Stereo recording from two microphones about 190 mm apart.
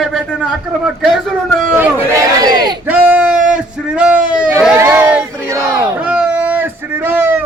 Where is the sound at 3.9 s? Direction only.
5° right (ahead or behind).